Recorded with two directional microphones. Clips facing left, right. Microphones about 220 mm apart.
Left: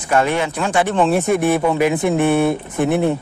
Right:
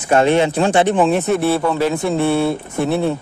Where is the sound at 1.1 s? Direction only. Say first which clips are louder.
Even; 10° left (ahead or behind).